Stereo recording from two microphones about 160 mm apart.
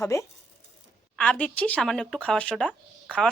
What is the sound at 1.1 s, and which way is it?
Speech, 5° left (ahead or behind).